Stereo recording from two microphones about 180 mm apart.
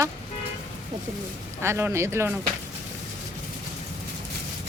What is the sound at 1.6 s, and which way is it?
Speech, 15° right (ahead or behind).